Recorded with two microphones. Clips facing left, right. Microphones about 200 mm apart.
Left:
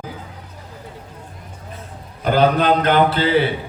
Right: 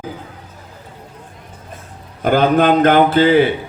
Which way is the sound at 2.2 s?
50° right (ahead or behind).